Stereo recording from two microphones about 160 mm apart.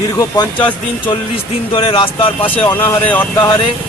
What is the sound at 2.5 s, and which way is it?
Speech, 10° left (ahead or behind).